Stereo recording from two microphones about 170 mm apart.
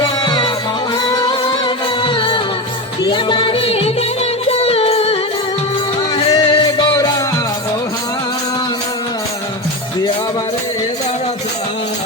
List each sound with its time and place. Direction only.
0.0 s music: 25° left (ahead or behind)
6.1 s music: 25° left (ahead or behind)